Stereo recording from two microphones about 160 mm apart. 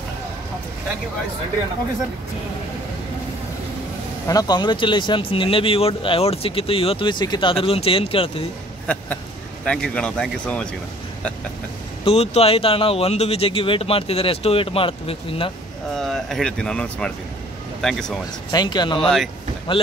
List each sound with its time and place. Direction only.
4.3 s speech: 25° left (ahead or behind)
8.9 s speech: 10° left (ahead or behind)
12.0 s speech: 40° left (ahead or behind)
15.9 s speech: centre (ahead or behind)
18.5 s speech: 25° left (ahead or behind)